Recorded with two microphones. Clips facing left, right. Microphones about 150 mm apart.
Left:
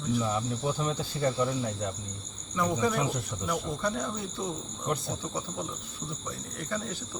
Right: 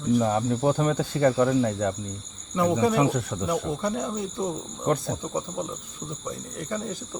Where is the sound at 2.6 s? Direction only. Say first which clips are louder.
Right 6 dB; 65° right (ahead or behind).